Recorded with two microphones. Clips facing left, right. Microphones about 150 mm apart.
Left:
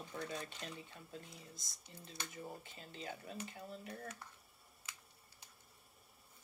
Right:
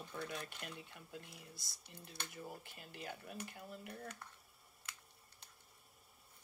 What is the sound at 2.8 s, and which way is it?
Speech, 10° right (ahead or behind).